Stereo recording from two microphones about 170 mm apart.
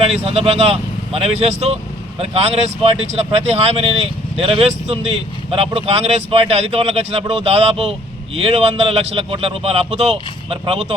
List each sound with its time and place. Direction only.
0.0 s speech: 35° right (ahead or behind)